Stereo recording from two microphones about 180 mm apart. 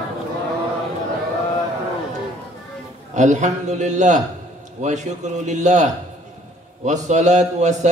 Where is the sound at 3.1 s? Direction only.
40° right (ahead or behind).